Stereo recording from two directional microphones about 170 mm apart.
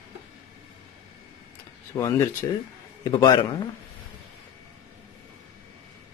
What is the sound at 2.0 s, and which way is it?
A man's voice, 20° left (ahead or behind).